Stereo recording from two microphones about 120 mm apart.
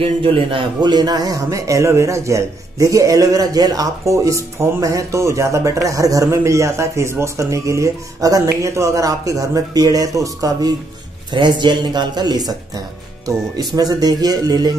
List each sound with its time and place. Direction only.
0.0 s a man's voice: 50° right (ahead or behind)
0.8 s a man's voice: 35° right (ahead or behind)
11.3 s speech: 40° right (ahead or behind)